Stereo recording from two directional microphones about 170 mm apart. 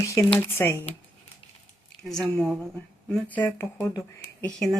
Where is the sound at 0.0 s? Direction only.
15° left (ahead or behind).